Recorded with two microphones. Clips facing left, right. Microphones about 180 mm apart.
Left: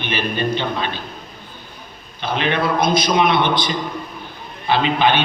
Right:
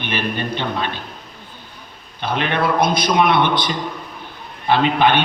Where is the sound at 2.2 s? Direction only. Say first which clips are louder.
Even; 55° right (ahead or behind).